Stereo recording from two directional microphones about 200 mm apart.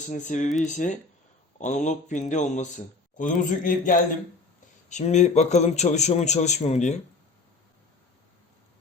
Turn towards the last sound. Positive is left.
turn(degrees=35)  # may be behind; listen again after turning